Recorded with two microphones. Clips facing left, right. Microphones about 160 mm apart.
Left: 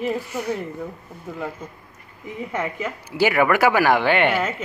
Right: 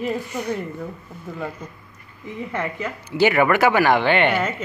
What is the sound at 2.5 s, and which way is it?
A woman's voice, 10° left (ahead or behind).